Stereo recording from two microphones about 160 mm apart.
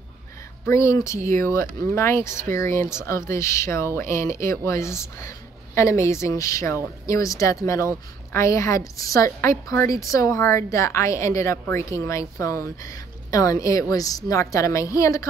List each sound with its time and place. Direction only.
0.7 s a woman's voice: 20° left (ahead or behind)